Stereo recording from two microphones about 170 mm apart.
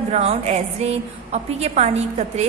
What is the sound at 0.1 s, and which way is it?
A woman's voice, 40° right (ahead or behind).